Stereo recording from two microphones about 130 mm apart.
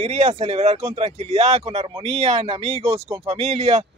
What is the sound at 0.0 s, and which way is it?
Speech, 55° right (ahead or behind).